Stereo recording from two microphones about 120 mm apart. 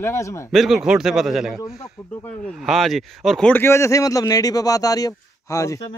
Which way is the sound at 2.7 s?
Centre (ahead or behind).